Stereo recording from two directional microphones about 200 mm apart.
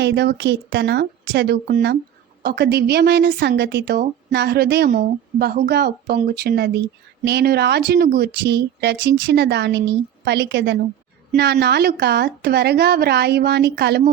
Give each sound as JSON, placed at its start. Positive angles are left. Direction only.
{"t": 0.0, "sound": "a woman's voice", "side_deg": -55}